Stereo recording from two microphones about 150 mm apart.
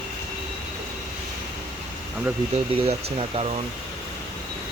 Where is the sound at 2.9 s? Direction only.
40° right (ahead or behind).